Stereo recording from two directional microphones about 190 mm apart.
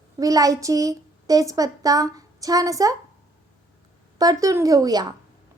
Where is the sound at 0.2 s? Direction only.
20° right (ahead or behind).